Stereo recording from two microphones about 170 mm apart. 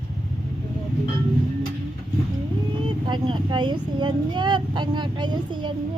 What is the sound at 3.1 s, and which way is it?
Speech, 30° right (ahead or behind).